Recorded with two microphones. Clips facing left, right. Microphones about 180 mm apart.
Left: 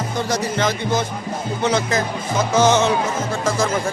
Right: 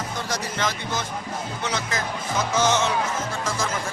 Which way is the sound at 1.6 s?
25° left (ahead or behind).